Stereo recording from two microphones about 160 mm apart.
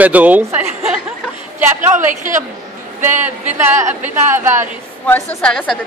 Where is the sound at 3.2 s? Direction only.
15° right (ahead or behind).